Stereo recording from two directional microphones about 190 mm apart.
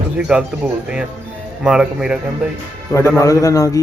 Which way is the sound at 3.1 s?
15° left (ahead or behind).